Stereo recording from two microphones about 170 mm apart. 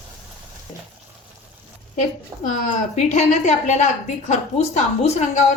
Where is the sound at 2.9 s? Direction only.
45° left (ahead or behind).